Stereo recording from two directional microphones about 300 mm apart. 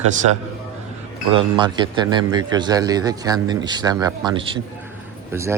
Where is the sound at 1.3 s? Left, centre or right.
Centre.